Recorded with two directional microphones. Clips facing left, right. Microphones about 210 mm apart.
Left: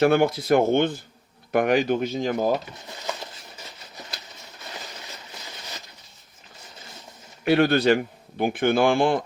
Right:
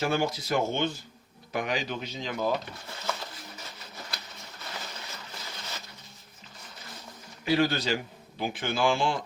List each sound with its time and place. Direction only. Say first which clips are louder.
0.0 s speech: left 9 dB; 60° left (ahead or behind); by 2.6 s 45° left (ahead or behind)
7.4 s speech: left 7 dB; 60° left (ahead or behind)